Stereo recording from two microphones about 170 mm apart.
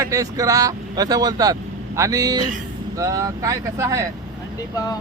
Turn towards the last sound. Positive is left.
turn(degrees=20)  # may be behind; listen again after turning